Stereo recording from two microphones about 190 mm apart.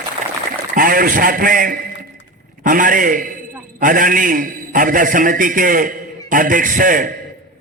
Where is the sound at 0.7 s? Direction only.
50° right (ahead or behind).